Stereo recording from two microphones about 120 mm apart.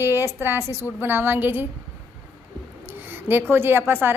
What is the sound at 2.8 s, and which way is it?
A woman's voice, 15° right (ahead or behind).